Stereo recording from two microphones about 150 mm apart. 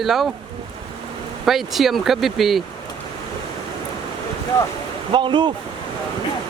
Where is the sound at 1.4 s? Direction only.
Centre (ahead or behind).